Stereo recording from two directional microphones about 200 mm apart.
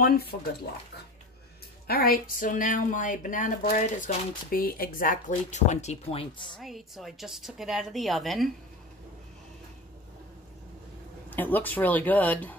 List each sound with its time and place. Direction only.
0.0 s speech: 50° left (ahead or behind)
1.9 s speech: 45° left (ahead or behind); by 6.6 s 25° left (ahead or behind)
6.6 s a woman's voice: centre (ahead or behind)
11.2 s speech: 10° left (ahead or behind)